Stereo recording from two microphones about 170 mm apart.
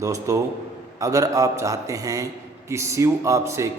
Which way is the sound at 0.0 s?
20° right (ahead or behind).